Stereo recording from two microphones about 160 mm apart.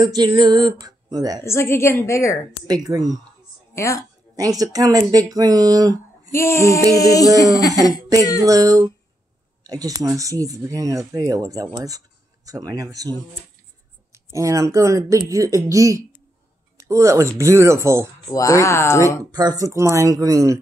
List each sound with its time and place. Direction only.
0.0 s speech: 25° right (ahead or behind)
1.4 s a woman's voice: 15° left (ahead or behind)
2.6 s speech: 25° right (ahead or behind)
3.7 s speech: 20° left (ahead or behind)
4.4 s speech: 20° right (ahead or behind)
6.3 s a sound: 15° left (ahead or behind)
8.4 s speech: 20° right (ahead or behind)
18.3 s a sound: 20° left (ahead or behind)
19.3 s speech: 25° right (ahead or behind)